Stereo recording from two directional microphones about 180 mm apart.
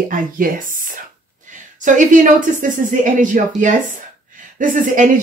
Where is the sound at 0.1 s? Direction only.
50° right (ahead or behind).